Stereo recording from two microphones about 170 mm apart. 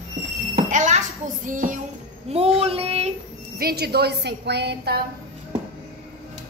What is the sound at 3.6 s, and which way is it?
A woman's voice, 70° right (ahead or behind).